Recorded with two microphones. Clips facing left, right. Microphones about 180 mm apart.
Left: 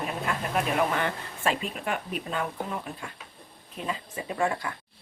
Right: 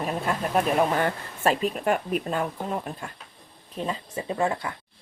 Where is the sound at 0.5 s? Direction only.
40° right (ahead or behind).